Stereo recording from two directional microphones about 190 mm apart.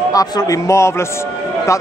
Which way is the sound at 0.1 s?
20° left (ahead or behind).